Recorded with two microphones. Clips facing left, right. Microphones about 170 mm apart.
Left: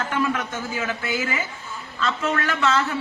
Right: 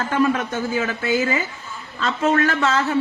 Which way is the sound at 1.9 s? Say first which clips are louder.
Right 5 dB; 35° right (ahead or behind).